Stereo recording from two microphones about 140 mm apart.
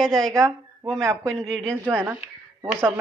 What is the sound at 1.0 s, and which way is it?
Speech, 20° right (ahead or behind).